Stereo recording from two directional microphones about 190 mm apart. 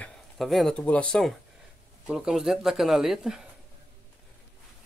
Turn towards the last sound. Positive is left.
turn(degrees=0)  # may be behind; listen again after turning